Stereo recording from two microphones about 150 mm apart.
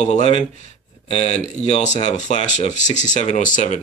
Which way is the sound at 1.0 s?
45° left (ahead or behind).